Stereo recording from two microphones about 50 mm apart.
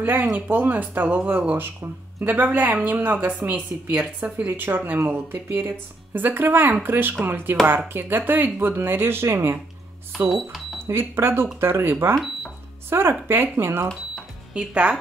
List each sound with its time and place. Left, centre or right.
0.0 s speech: right
10.1 s speech: centre
10.9 s speech: right
14.5 s speech: right